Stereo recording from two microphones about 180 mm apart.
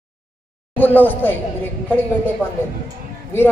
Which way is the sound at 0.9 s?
10° left (ahead or behind).